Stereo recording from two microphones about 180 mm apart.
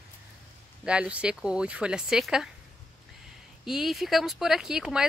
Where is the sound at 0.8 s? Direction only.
5° right (ahead or behind).